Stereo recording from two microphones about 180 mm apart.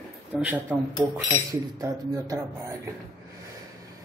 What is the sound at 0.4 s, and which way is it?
Speech, 10° right (ahead or behind).